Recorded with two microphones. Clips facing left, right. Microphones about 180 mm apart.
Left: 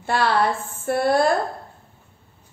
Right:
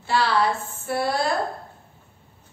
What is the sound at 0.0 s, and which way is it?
A woman's voice, 50° left (ahead or behind).